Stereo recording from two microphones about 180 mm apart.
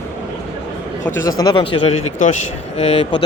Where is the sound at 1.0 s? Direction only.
20° left (ahead or behind); by 3.2 s 35° left (ahead or behind).